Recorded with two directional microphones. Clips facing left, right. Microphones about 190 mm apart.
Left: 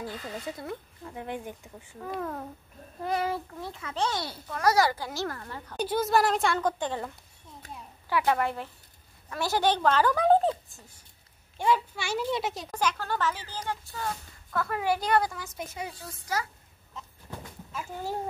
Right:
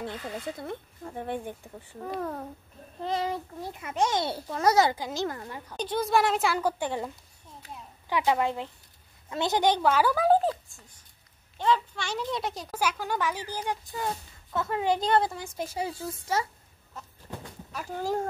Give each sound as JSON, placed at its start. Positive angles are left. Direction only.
{"t": 0.6, "sound": "speech", "side_deg": -50}
{"t": 2.0, "sound": "speech", "side_deg": -30}
{"t": 5.8, "sound": "speech", "side_deg": 5}
{"t": 8.1, "sound": "speech", "side_deg": -15}
{"t": 11.5, "sound": "speech", "side_deg": 10}
{"t": 17.7, "sound": "speech", "side_deg": -40}